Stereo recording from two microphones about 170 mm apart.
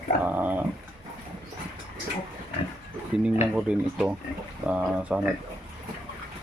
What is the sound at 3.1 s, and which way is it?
Speech, 5° right (ahead or behind).